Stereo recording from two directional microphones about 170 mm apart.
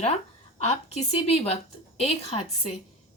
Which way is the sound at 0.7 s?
40° left (ahead or behind).